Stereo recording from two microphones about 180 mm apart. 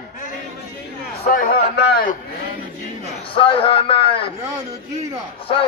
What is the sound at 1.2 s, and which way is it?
Speech, 50° left (ahead or behind).